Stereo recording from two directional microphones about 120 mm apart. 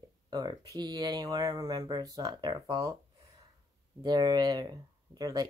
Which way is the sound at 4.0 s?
35° right (ahead or behind).